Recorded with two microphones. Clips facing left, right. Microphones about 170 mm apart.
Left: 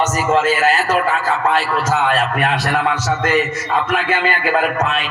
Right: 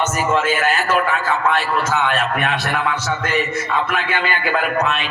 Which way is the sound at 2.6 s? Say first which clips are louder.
Left 3 dB; 90° left.